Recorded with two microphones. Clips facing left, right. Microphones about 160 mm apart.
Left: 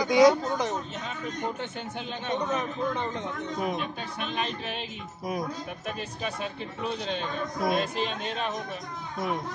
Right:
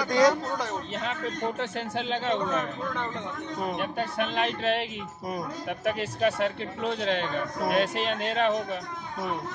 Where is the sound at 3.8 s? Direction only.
65° right (ahead or behind).